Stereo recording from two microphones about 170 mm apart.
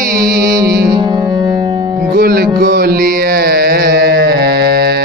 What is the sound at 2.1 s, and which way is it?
Music, 65° right (ahead or behind).